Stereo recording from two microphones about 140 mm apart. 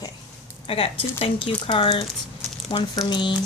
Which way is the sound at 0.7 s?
40° left (ahead or behind).